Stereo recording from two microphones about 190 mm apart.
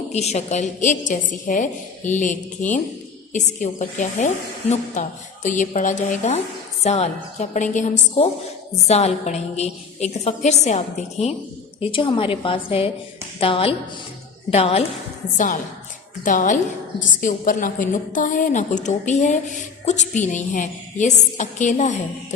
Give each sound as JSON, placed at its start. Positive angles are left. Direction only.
{"t": 0.1, "sound": "a woman's voice", "side_deg": 35}
{"t": 15.4, "sound": "a woman's voice", "side_deg": 45}